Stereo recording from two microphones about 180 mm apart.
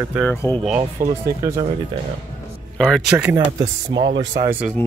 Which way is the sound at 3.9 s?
90° right.